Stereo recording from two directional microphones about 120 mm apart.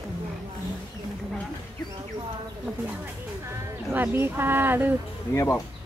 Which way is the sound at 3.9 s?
20° right (ahead or behind).